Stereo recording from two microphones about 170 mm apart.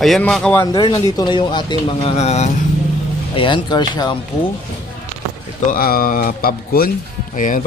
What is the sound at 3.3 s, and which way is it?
Speech, 30° left (ahead or behind).